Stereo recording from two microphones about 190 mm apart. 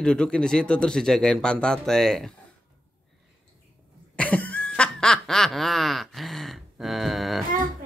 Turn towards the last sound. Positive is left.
turn(degrees=0)  # may be behind; listen again after turning